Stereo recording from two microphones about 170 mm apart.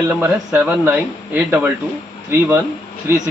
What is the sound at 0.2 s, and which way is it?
A man's voice, 15° right (ahead or behind).